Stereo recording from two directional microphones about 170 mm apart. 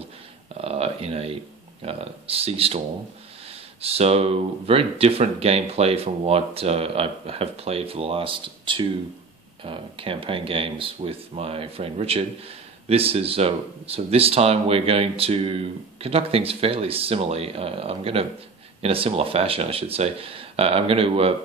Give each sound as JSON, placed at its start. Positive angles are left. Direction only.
{"t": 0.6, "sound": "speech", "side_deg": -35}
{"t": 3.8, "sound": "speech", "side_deg": -35}